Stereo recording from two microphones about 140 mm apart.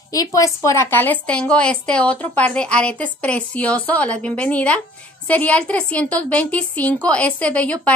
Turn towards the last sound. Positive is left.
turn(degrees=10)  # may be behind; listen again after turning